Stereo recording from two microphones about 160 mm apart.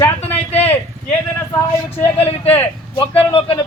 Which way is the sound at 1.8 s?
15° left (ahead or behind).